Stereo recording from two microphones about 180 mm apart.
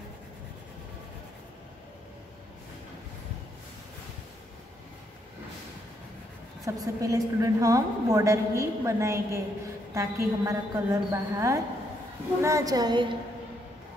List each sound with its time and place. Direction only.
6.6 s a woman's voice: 20° right (ahead or behind)